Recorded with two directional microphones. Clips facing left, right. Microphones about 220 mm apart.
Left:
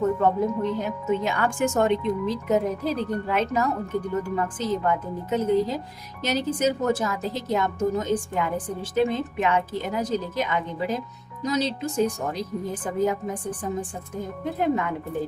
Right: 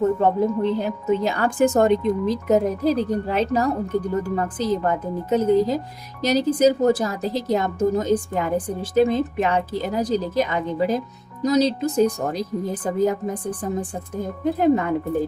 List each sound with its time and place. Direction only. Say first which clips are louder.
0.2 s a woman's voice: right 3 dB; 30° right (ahead or behind)